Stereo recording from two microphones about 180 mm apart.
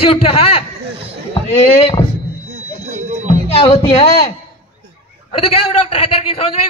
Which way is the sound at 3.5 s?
30° left (ahead or behind).